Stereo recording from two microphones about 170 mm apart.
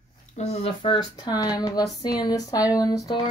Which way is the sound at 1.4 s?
20° left (ahead or behind).